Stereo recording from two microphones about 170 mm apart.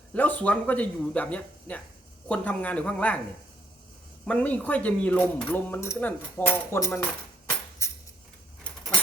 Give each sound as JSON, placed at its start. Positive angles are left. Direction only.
{"t": 0.1, "sound": "speech", "side_deg": 10}
{"t": 4.3, "sound": "speech", "side_deg": 10}
{"t": 7.8, "sound": "a sound", "side_deg": 15}